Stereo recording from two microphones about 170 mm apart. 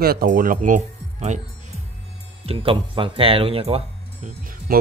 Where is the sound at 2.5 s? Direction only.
30° right (ahead or behind).